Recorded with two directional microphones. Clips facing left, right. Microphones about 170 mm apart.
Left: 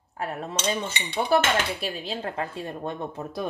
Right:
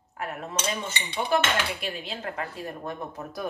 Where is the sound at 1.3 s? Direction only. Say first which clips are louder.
Left 3 dB; 35° left (ahead or behind).